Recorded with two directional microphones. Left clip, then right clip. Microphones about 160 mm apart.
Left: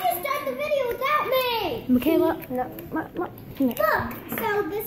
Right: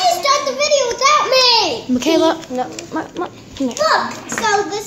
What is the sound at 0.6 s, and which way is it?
Speech, 25° right (ahead or behind).